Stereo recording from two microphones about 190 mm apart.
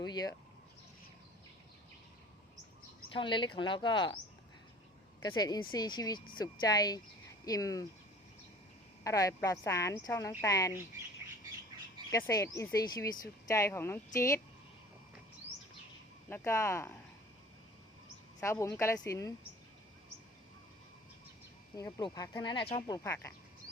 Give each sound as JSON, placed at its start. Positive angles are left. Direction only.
{"t": 0.0, "sound": "speech", "side_deg": 20}
{"t": 3.1, "sound": "speech", "side_deg": 25}
{"t": 5.2, "sound": "speech", "side_deg": 20}
{"t": 9.0, "sound": "speech", "side_deg": 15}
{"t": 12.1, "sound": "speech", "side_deg": 15}
{"t": 16.3, "sound": "speech", "side_deg": 15}
{"t": 18.4, "sound": "speech", "side_deg": 15}
{"t": 21.8, "sound": "speech", "side_deg": 20}
{"t": 22.7, "sound": "speech", "side_deg": 15}